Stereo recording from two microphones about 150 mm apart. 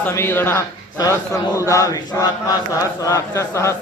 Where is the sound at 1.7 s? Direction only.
20° left (ahead or behind).